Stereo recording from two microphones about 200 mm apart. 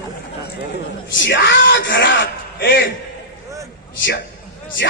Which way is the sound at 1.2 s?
65° left (ahead or behind).